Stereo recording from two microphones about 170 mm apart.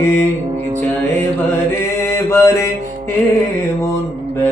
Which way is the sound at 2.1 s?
15° left (ahead or behind).